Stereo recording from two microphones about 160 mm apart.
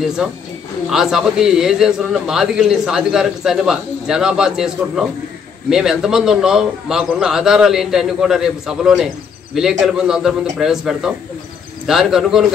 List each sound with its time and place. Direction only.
0.2 s a man's voice: 5° right (ahead or behind)